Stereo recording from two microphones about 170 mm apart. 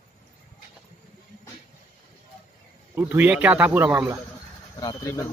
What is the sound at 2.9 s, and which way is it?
A man's voice, 10° right (ahead or behind).